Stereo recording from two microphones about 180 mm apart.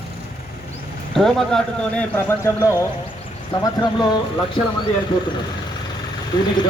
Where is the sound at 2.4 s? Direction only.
15° left (ahead or behind).